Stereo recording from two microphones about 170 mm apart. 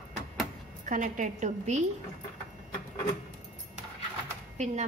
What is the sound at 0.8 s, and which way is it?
A woman's voice, 50° right (ahead or behind).